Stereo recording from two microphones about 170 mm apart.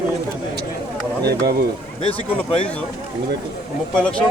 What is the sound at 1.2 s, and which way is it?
Speech, 70° right (ahead or behind).